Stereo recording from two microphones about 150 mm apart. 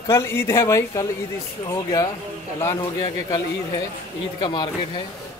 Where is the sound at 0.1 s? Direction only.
15° left (ahead or behind).